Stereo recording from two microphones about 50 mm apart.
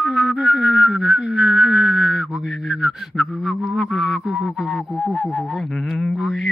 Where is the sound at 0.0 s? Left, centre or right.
Centre.